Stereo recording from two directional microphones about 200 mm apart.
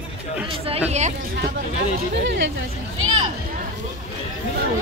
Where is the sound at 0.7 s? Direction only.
30° right (ahead or behind).